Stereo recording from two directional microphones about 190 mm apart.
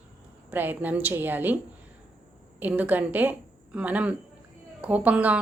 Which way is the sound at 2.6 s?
10° right (ahead or behind).